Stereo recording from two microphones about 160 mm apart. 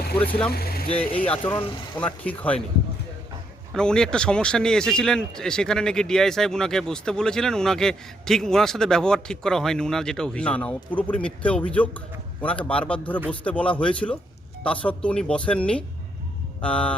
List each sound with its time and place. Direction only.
0.2 s speech: 10° left (ahead or behind)
0.5 s vehicle: 75° left (ahead or behind)
1.1 s speech: 10° left (ahead or behind)
3.8 s speech: 5° left (ahead or behind)